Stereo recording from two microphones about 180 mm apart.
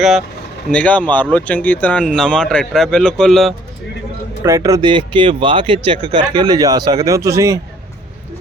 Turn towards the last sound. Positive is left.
turn(degrees=-15)  # may be behind; listen again after turning